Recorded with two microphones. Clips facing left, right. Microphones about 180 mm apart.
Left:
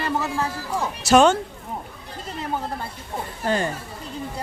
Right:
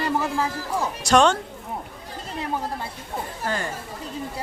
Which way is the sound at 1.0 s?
5° left (ahead or behind).